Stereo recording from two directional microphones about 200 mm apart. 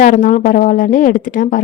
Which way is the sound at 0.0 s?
40° left (ahead or behind).